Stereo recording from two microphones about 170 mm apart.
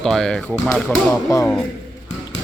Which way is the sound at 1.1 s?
20° left (ahead or behind).